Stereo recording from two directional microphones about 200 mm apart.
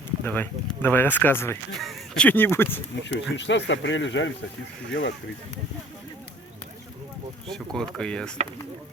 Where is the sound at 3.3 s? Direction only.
65° left (ahead or behind).